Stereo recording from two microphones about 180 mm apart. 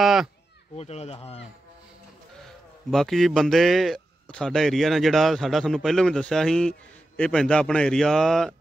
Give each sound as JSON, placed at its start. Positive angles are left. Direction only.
{"t": 0.0, "sound": "a sound", "side_deg": 0}
{"t": 0.7, "sound": "speech", "side_deg": 35}
{"t": 2.9, "sound": "speech", "side_deg": 0}